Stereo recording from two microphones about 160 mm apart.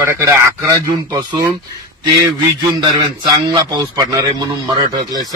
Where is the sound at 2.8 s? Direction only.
25° right (ahead or behind).